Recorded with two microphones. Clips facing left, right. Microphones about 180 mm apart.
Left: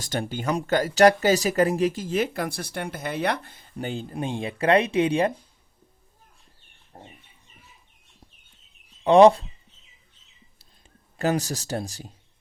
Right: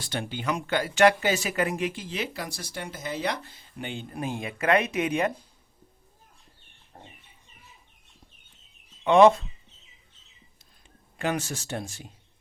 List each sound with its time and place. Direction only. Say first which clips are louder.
0.0 s speech: left 3 dB; 45° left (ahead or behind)
4.1 s speech: left 3 dB; 30° left (ahead or behind)
6.9 s chicken: left 3 dB; 35° left (ahead or behind)
9.0 s speech: left 3 dB; 35° left (ahead or behind)
11.2 s speech: left 4 dB; 35° left (ahead or behind)